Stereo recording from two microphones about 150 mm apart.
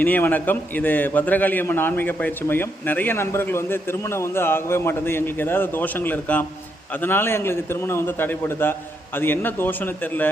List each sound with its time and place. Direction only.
0.0 s a man's voice: 10° left (ahead or behind)